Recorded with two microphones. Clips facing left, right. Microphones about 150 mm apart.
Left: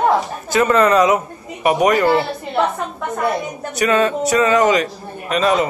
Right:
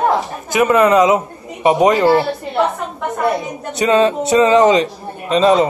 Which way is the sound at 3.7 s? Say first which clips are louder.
Right 3 dB; 25° right (ahead or behind).